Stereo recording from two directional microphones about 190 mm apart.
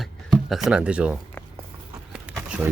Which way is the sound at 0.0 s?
Centre (ahead or behind).